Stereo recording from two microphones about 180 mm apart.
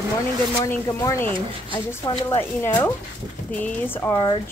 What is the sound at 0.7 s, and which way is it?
Speech, 15° left (ahead or behind).